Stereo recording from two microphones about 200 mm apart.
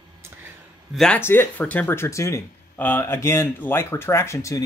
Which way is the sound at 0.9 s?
5° left (ahead or behind).